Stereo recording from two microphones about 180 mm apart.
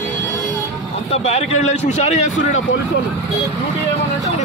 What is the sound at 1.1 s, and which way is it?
A man's voice, 35° left (ahead or behind).